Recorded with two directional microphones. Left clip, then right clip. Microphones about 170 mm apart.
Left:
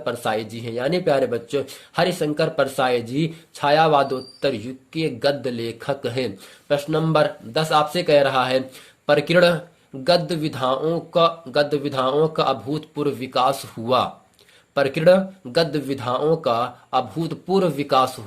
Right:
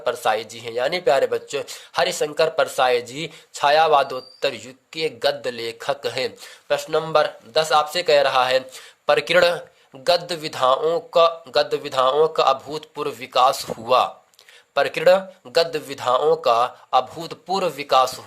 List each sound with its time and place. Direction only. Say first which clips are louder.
0.0 s speech: right 3 dB; 25° right (ahead or behind)